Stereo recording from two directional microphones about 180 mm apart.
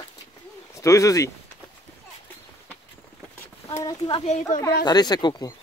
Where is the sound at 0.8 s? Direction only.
15° left (ahead or behind).